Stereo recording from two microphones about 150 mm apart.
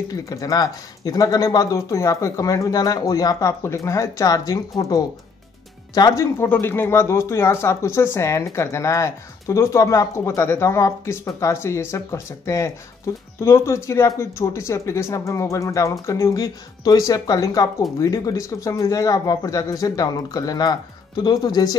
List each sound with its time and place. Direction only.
0.1 s speech: 25° left (ahead or behind)